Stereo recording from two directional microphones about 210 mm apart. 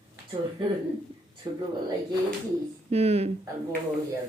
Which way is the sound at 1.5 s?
20° right (ahead or behind).